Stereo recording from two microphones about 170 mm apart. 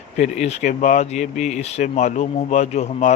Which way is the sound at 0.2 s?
40° left (ahead or behind).